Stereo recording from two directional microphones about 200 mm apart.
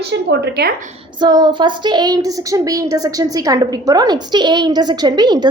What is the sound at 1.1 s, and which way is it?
A woman's voice, 20° right (ahead or behind).